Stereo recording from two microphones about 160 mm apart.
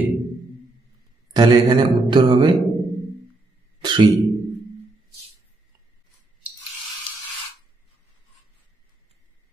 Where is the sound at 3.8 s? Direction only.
30° right (ahead or behind).